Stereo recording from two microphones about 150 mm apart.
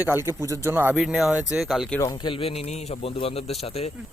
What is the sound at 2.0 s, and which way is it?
A man's voice, 25° left (ahead or behind).